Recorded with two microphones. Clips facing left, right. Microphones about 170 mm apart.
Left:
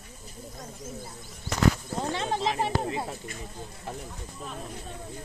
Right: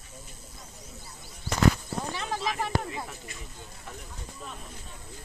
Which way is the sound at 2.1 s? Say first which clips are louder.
Left 5 dB; 25° left (ahead or behind).